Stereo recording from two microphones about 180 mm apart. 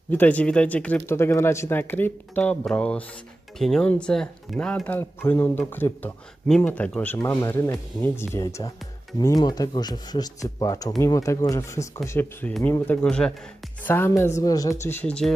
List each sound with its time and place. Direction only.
0.1 s speech: 10° left (ahead or behind)
14.9 s speech: 10° left (ahead or behind)